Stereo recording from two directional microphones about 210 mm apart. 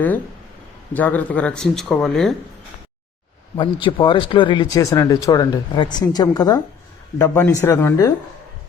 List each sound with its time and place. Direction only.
0.9 s speech: 10° left (ahead or behind)
3.6 s speech: 25° left (ahead or behind)